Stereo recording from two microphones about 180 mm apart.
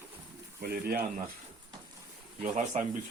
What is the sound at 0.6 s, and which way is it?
Speech, 60° right (ahead or behind).